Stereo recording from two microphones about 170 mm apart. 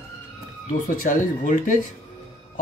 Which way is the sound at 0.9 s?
50° left (ahead or behind).